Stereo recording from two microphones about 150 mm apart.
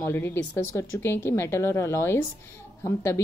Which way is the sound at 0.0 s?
15° left (ahead or behind).